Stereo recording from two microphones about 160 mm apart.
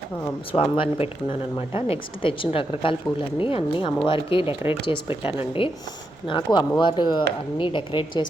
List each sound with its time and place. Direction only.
0.5 s speech: 35° left (ahead or behind)
5.0 s a woman's voice: 15° right (ahead or behind)
5.4 s speech: 35° left (ahead or behind)